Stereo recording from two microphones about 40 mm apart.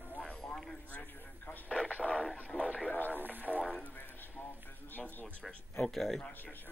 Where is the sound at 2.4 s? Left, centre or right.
Left.